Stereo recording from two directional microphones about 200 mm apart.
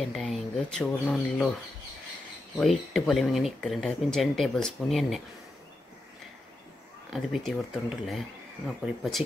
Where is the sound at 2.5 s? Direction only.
Centre (ahead or behind).